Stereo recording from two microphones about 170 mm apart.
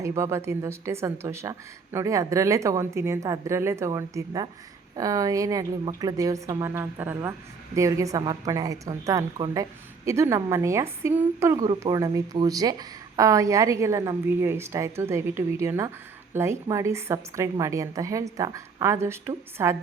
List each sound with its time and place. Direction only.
0.0 s a woman's voice: 15° right (ahead or behind)